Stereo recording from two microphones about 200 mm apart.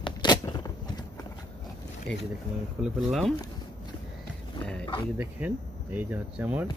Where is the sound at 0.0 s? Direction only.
25° left (ahead or behind).